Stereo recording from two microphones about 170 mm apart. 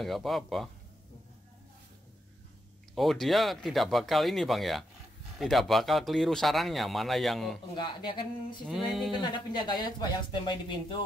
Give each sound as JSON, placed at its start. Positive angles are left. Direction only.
{"t": 0.0, "sound": "speech", "side_deg": 0}
{"t": 2.9, "sound": "speech", "side_deg": 0}
{"t": 7.7, "sound": "speech", "side_deg": 25}
{"t": 8.6, "sound": "speech", "side_deg": 0}
{"t": 9.1, "sound": "speech", "side_deg": 25}